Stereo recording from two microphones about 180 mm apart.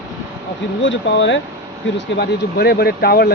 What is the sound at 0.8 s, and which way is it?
Speech, 90° left.